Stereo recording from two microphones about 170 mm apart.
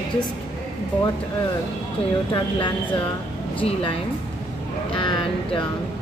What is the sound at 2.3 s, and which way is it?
A woman's voice, 30° left (ahead or behind).